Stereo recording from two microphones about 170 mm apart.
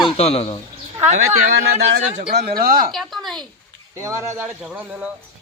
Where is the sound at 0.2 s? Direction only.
35° left (ahead or behind).